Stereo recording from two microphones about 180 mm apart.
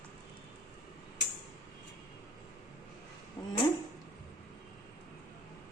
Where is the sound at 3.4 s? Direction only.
20° left (ahead or behind).